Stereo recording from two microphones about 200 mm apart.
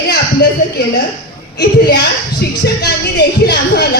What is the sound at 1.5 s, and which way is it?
A woman's voice, 55° left (ahead or behind).